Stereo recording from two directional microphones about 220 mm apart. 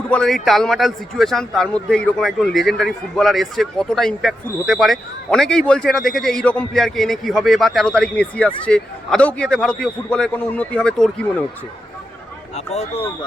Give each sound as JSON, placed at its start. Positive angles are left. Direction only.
{"t": 0.1, "sound": "speech", "side_deg": 0}
{"t": 12.5, "sound": "speech", "side_deg": 30}